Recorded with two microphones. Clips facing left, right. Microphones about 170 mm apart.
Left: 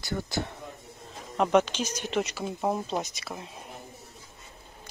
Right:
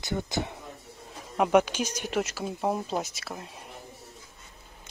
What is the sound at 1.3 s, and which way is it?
Speech, 10° right (ahead or behind).